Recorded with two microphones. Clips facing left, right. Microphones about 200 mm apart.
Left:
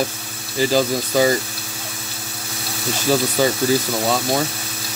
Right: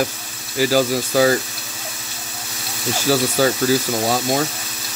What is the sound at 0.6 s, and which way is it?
Speech, 10° right (ahead or behind).